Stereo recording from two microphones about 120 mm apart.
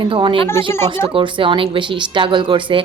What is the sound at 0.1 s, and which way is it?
Speech, 45° right (ahead or behind).